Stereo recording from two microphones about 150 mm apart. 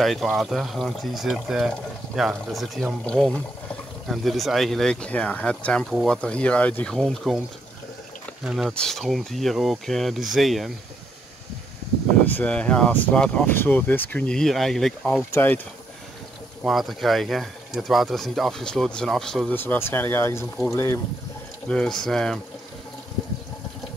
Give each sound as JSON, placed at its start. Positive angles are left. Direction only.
{"t": 0.0, "sound": "speech", "side_deg": 0}
{"t": 8.5, "sound": "speech", "side_deg": 0}
{"t": 12.4, "sound": "speech", "side_deg": 10}
{"t": 16.6, "sound": "speech", "side_deg": 0}
{"t": 19.5, "sound": "speech", "side_deg": 15}
{"t": 21.6, "sound": "speech", "side_deg": 5}